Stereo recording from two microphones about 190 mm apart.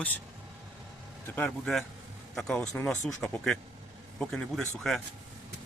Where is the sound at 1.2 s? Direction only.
10° left (ahead or behind).